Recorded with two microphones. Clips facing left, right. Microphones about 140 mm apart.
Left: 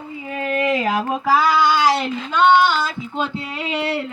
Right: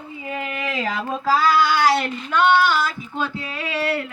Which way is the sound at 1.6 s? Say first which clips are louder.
Left 1 dB; 15° left (ahead or behind).